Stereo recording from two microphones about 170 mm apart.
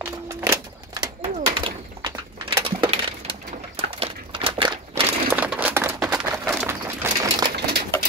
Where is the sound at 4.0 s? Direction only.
35° right (ahead or behind).